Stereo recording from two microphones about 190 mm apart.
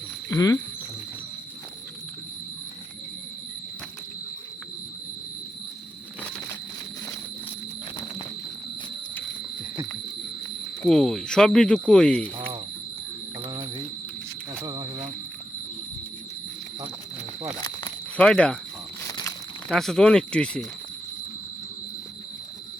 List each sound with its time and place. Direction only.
0.3 s speech: 15° left (ahead or behind)
10.8 s speech: centre (ahead or behind)
14.6 s insect: 20° right (ahead or behind)
18.2 s speech: 5° left (ahead or behind)
19.0 s a sound: 15° left (ahead or behind)
19.7 s speech: centre (ahead or behind)